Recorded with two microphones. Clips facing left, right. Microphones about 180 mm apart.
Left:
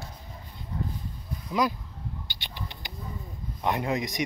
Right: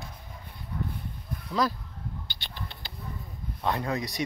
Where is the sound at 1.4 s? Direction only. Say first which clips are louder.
Left 1 dB; 15° left (ahead or behind).